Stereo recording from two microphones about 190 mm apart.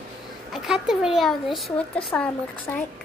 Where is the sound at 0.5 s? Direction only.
Centre (ahead or behind).